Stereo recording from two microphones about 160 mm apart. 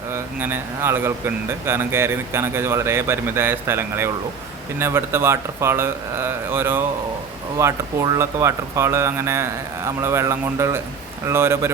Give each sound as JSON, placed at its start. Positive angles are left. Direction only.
{"t": 0.1, "sound": "speech", "side_deg": -15}